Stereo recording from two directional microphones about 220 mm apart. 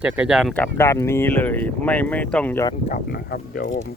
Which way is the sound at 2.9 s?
45° left (ahead or behind).